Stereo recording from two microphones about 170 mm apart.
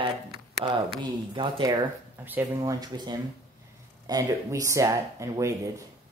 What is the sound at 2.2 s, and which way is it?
Speech, 15° right (ahead or behind).